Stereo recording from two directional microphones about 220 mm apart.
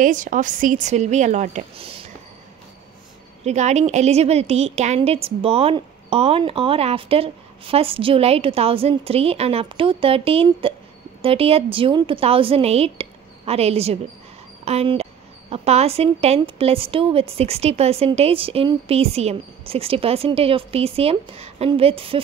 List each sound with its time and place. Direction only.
0.0 s a woman's voice: 35° right (ahead or behind)
3.4 s a woman's voice: 30° right (ahead or behind)